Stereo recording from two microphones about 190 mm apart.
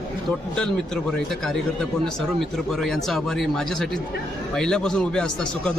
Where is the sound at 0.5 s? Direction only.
5° left (ahead or behind).